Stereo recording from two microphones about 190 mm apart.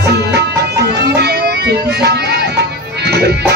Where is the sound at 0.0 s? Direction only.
60° right (ahead or behind).